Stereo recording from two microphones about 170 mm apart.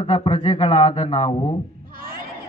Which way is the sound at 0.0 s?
35° left (ahead or behind).